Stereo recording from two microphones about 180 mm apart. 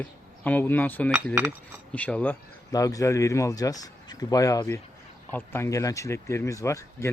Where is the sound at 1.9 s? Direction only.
5° left (ahead or behind).